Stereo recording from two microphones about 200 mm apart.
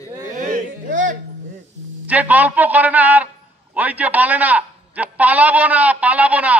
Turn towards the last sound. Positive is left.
turn(degrees=-5)  # may be behind; listen again after turning